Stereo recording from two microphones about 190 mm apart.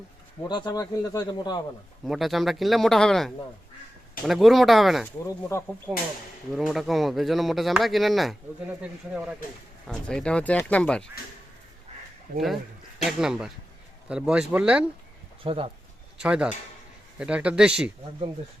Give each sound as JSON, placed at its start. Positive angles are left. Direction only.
{"t": 0.4, "sound": "speech", "side_deg": 20}
{"t": 2.0, "sound": "speech", "side_deg": 0}
{"t": 12.3, "sound": "speech", "side_deg": -50}
{"t": 13.1, "sound": "speech", "side_deg": -5}
{"t": 15.4, "sound": "speech", "side_deg": -30}
{"t": 16.1, "sound": "speech", "side_deg": -5}